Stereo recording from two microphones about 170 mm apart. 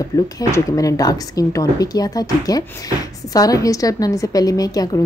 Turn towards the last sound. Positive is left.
turn(degrees=20)  # may be behind; listen again after turning